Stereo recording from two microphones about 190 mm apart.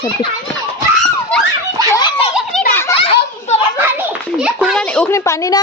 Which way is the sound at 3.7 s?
10° right (ahead or behind).